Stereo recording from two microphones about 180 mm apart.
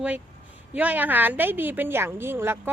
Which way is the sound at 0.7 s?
10° right (ahead or behind).